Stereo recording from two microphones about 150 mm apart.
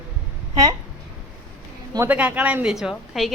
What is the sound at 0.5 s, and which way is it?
Speech, 25° right (ahead or behind).